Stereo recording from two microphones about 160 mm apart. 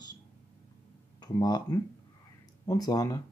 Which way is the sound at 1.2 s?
25° left (ahead or behind).